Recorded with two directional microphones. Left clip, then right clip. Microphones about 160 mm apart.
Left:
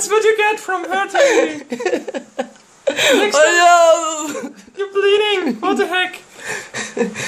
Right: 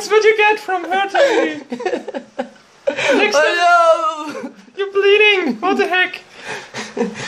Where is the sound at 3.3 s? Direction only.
30° left (ahead or behind).